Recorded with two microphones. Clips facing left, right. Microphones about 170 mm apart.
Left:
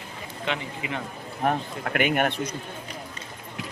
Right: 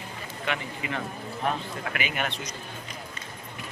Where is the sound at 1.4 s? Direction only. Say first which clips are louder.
Left 4 dB; 55° left (ahead or behind).